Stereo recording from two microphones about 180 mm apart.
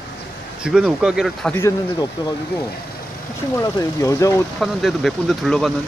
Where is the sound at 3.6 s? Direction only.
15° left (ahead or behind).